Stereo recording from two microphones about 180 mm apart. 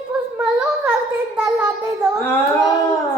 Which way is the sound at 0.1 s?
5° right (ahead or behind).